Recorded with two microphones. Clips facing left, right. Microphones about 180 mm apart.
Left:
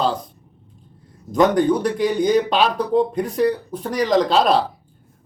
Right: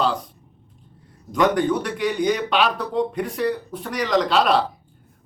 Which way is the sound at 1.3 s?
40° left (ahead or behind).